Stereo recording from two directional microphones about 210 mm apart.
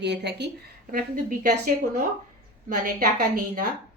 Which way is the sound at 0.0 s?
55° right (ahead or behind).